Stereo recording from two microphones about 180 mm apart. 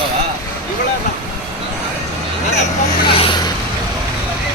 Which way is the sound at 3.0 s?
30° left (ahead or behind).